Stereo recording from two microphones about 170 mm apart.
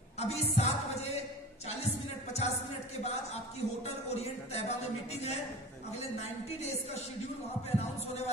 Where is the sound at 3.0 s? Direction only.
40° left (ahead or behind).